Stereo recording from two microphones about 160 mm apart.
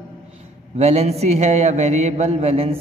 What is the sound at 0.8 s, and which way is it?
A man's voice, 40° right (ahead or behind).